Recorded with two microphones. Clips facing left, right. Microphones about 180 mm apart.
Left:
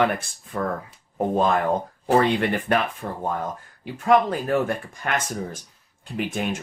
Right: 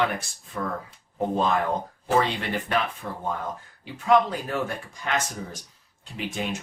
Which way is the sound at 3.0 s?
40° left (ahead or behind).